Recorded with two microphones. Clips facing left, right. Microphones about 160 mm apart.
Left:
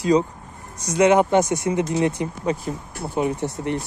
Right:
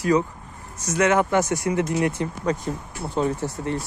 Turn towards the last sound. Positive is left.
turn(degrees=20)  # may be behind; listen again after turning